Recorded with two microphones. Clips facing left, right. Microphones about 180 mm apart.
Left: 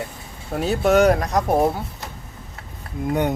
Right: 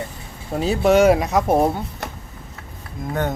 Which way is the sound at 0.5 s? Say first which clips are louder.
Right 1 dB; centre (ahead or behind).